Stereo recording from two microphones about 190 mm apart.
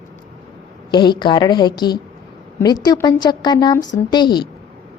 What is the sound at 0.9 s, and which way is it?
A woman's voice, 25° left (ahead or behind).